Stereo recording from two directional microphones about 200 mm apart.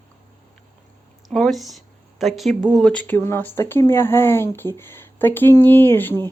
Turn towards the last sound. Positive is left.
turn(degrees=10)  # may be behind; listen again after turning